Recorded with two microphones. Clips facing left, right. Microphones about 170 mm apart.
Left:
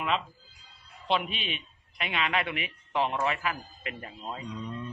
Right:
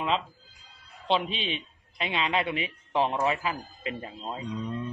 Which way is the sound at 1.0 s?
30° right (ahead or behind).